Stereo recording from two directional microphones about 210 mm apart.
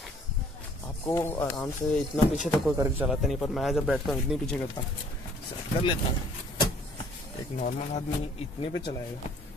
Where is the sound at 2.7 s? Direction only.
15° right (ahead or behind).